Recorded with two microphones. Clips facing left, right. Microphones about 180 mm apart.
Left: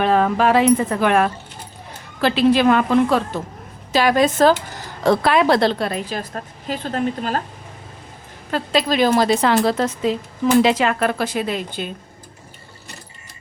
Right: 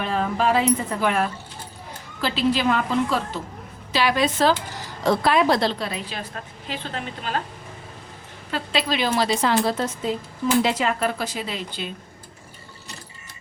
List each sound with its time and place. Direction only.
0.0 s a woman's voice: 70° left (ahead or behind)
3.9 s a woman's voice: 45° left (ahead or behind)
5.0 s a woman's voice: 65° left (ahead or behind); by 7.4 s 45° left (ahead or behind)
8.4 s a woman's voice: 45° left (ahead or behind)